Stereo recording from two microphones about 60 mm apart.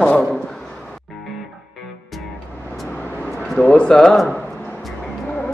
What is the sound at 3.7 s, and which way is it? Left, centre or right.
Speech, centre.